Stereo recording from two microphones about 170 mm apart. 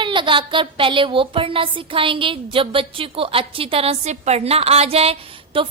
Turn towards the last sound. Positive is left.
turn(degrees=-30)  # may be behind; listen again after turning